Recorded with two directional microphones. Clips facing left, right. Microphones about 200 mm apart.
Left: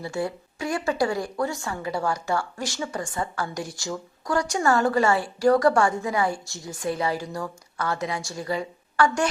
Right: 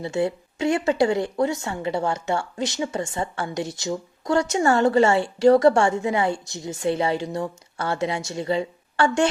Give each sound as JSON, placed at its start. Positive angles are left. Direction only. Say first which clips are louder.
{"t": 0.0, "sound": "a woman's voice", "louder": "right 5 dB", "side_deg": -25}